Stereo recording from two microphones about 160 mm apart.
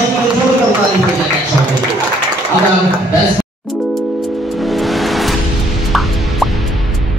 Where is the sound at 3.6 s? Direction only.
Centre (ahead or behind).